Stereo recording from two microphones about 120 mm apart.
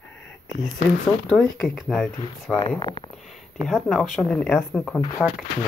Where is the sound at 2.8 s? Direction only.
40° left (ahead or behind).